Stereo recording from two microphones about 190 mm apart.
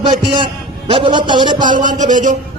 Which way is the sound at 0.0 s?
25° right (ahead or behind).